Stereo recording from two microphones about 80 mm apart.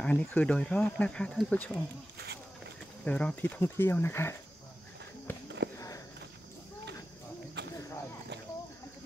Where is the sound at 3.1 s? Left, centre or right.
Centre.